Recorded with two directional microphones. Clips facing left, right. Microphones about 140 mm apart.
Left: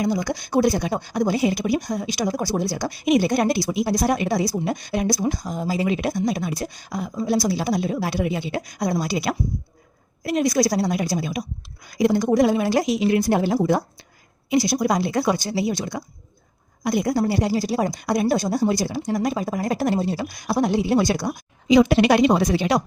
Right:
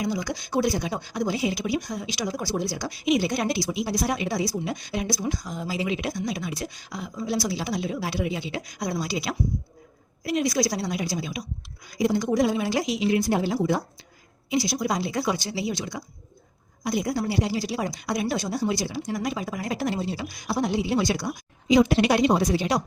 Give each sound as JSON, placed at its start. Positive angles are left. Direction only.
{"t": 0.0, "sound": "speech", "side_deg": 50}
{"t": 21.7, "sound": "a woman's voice", "side_deg": 90}